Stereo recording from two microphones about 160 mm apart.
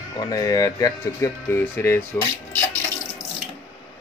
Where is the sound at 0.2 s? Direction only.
20° left (ahead or behind).